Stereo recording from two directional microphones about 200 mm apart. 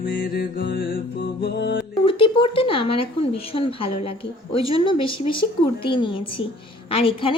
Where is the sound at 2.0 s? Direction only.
25° left (ahead or behind).